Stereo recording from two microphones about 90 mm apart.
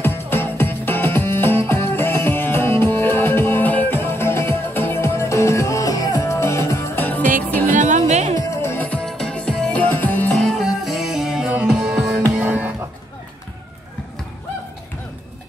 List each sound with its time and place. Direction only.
0.0 s music: 25° left (ahead or behind); by 6.2 s 45° left (ahead or behind)
6.2 s music: 30° left (ahead or behind)
7.0 s music: 20° left (ahead or behind)
8.0 s music: 30° left (ahead or behind)
9.0 s music: 5° left (ahead or behind)
10.3 s music: centre (ahead or behind); by 12.7 s 15° right (ahead or behind)